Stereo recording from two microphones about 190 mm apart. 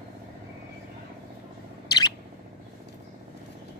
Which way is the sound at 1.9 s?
20° left (ahead or behind).